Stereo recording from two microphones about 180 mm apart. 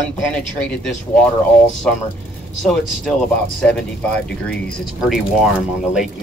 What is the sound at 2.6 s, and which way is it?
Speech, centre (ahead or behind).